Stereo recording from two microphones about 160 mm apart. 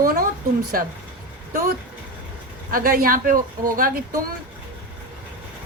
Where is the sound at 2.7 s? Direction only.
65° right (ahead or behind).